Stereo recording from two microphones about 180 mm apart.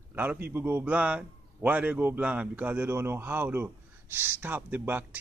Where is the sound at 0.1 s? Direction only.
10° right (ahead or behind).